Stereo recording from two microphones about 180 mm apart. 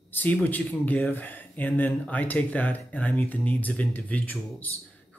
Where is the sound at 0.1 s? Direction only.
10° left (ahead or behind).